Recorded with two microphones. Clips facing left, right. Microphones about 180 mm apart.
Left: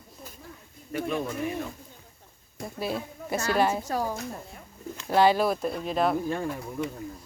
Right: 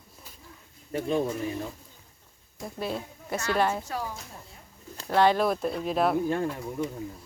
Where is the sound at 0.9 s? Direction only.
30° right (ahead or behind).